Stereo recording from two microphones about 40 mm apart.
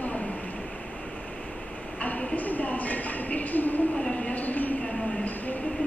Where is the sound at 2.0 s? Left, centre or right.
Left.